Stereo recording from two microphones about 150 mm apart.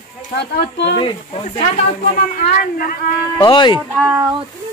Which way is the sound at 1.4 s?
50° left (ahead or behind).